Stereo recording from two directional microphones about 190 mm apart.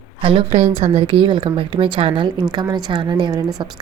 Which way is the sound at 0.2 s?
30° right (ahead or behind).